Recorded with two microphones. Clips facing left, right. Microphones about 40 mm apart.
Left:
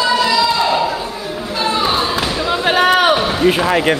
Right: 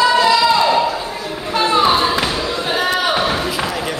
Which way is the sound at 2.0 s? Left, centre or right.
Centre.